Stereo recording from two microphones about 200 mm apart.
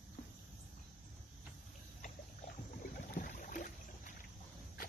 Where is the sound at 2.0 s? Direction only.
45° left (ahead or behind).